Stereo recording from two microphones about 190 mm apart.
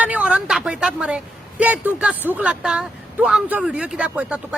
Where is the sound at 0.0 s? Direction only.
5° right (ahead or behind).